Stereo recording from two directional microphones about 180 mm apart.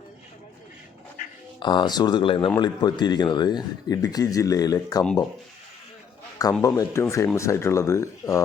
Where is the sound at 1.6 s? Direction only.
25° left (ahead or behind).